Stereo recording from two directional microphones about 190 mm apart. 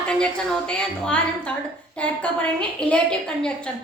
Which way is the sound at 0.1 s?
5° left (ahead or behind).